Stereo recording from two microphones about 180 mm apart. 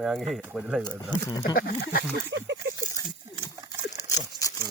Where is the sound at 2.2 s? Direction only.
75° right (ahead or behind).